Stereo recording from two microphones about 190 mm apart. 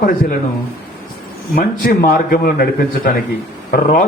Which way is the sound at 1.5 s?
55° left (ahead or behind).